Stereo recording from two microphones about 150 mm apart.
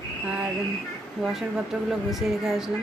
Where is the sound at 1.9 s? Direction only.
Centre (ahead or behind).